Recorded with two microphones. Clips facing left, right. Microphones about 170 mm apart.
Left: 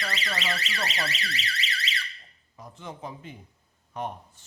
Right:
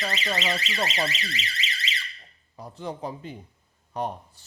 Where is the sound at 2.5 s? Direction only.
35° right (ahead or behind).